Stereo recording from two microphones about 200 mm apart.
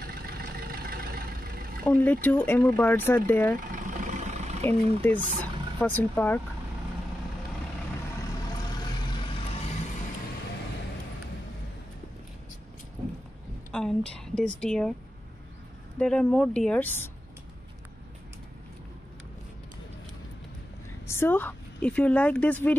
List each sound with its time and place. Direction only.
0.0 s vehicle: 50° right (ahead or behind)
1.9 s speech: 10° left (ahead or behind)
3.5 s vehicle: 40° right (ahead or behind)
4.6 s speech: 10° left (ahead or behind)
13.7 s a woman's voice: centre (ahead or behind)
16.0 s speech: 5° left (ahead or behind)
21.1 s a woman's voice: 10° left (ahead or behind)